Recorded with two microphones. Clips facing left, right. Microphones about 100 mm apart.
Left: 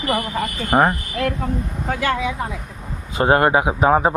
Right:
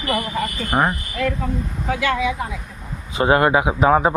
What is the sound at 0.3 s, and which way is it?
A woman's voice, 40° left (ahead or behind).